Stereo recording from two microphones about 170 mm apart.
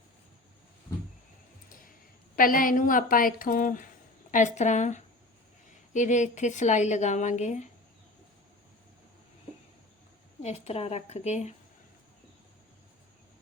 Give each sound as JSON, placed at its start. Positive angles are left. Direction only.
{"t": 2.3, "sound": "a woman's voice", "side_deg": 55}
{"t": 10.4, "sound": "a woman's voice", "side_deg": 40}